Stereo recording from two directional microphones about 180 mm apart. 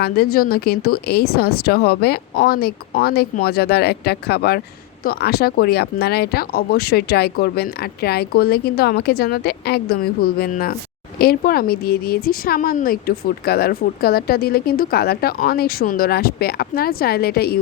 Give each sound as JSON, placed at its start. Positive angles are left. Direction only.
{"t": 0.0, "sound": "speech", "side_deg": 55}